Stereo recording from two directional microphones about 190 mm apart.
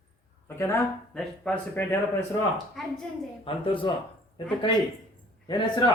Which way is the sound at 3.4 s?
30° left (ahead or behind).